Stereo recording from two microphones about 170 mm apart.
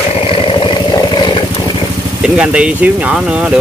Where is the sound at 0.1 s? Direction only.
30° left (ahead or behind).